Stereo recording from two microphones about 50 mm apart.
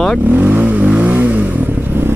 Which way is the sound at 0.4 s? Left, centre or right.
Right.